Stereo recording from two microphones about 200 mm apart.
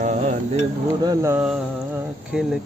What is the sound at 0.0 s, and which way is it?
Dishes, 35° right (ahead or behind).